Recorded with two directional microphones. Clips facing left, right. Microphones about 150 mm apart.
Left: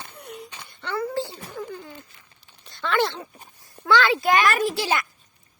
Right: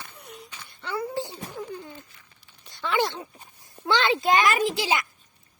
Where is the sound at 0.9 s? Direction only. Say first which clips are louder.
Left 3 dB; 15° right (ahead or behind).